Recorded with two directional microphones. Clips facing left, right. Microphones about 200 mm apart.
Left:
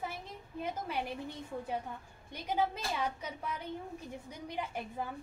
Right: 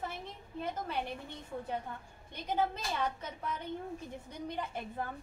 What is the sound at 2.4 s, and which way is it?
A woman's voice, 10° left (ahead or behind).